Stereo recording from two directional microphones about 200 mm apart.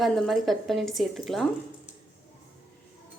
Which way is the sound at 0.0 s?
Centre (ahead or behind).